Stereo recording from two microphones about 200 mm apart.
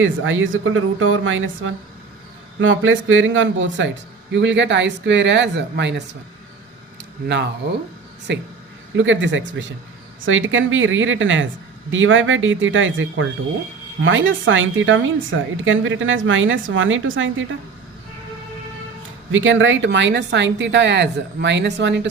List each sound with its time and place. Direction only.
0.0 s a woman's voice: 80° right; by 6.0 s 60° right (ahead or behind)
8.3 s a woman's voice: 60° right (ahead or behind)
19.3 s speech: 75° right (ahead or behind)